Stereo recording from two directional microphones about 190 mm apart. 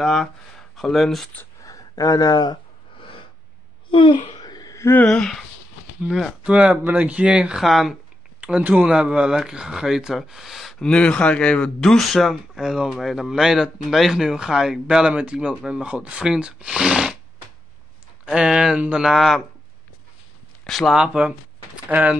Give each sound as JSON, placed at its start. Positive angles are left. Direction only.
{"t": 0.0, "sound": "a sound", "side_deg": 0}
{"t": 6.0, "sound": "speech", "side_deg": 0}
{"t": 18.2, "sound": "speech", "side_deg": -5}
{"t": 20.6, "sound": "speech", "side_deg": 0}